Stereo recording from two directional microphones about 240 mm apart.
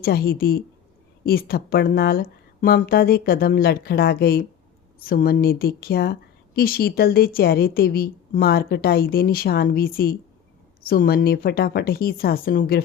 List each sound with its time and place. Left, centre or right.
0.0 s a woman's voice: left